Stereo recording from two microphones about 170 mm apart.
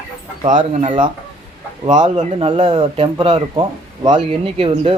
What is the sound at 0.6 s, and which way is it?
Speech, 30° right (ahead or behind).